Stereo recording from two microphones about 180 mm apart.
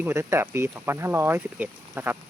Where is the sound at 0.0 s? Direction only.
15° right (ahead or behind).